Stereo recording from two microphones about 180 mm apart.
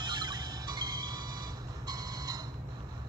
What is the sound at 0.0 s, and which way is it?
Music, 25° right (ahead or behind).